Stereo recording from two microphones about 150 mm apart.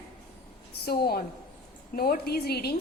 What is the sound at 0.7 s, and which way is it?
A woman's voice, 90° left.